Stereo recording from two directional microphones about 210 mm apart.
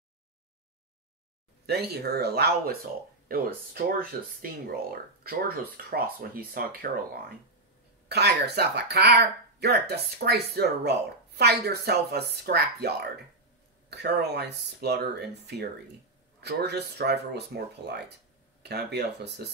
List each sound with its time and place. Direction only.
1.7 s speech: 50° right (ahead or behind)